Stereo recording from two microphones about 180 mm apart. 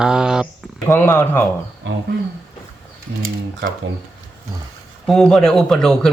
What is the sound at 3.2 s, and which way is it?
Speech, 55° right (ahead or behind).